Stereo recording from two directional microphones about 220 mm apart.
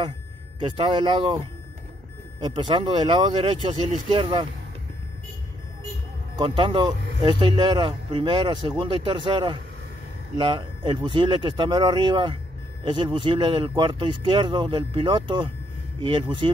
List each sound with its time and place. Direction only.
0.7 s speech: 20° right (ahead or behind)
2.4 s speech: 20° right (ahead or behind)
6.3 s speech: 20° right (ahead or behind)